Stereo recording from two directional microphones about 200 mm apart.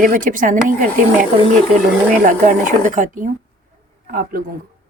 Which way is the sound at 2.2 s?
40° right (ahead or behind).